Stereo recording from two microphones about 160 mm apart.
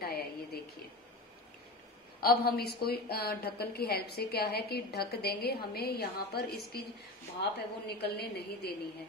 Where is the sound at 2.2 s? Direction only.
75° left (ahead or behind).